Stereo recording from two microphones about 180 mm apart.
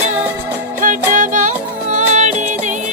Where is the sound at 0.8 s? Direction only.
45° right (ahead or behind).